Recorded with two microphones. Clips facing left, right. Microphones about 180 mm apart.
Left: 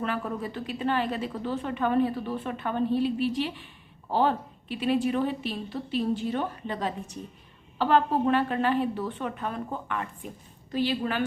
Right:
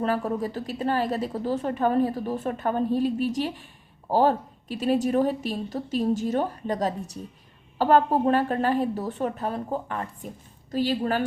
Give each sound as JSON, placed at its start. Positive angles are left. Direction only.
{"t": 0.0, "sound": "a woman's voice", "side_deg": -40}